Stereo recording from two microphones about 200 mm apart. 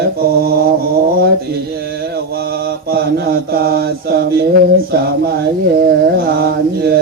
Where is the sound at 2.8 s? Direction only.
50° right (ahead or behind).